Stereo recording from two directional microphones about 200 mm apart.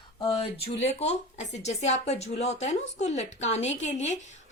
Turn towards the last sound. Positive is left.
turn(degrees=35)  # may be behind; listen again after turning